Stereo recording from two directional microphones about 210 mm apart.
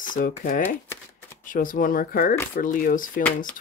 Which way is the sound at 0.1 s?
40° left (ahead or behind).